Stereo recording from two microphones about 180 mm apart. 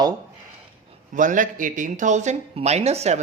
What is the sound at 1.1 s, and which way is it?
Speech, 45° right (ahead or behind).